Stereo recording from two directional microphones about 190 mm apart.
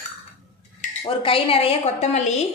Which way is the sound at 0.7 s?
30° left (ahead or behind).